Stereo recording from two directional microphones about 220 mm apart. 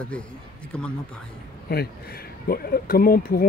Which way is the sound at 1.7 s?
45° left (ahead or behind).